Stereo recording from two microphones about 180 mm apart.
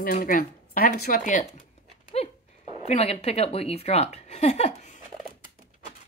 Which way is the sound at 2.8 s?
35° left (ahead or behind).